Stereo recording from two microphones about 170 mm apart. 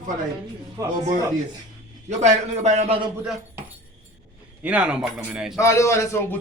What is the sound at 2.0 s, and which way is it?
Speech, 40° right (ahead or behind).